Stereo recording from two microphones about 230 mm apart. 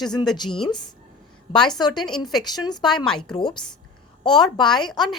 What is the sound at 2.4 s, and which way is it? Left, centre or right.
A woman's voice, centre.